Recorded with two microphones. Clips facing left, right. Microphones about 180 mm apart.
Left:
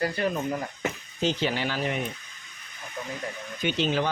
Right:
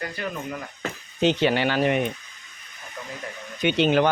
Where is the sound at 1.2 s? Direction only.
70° right (ahead or behind).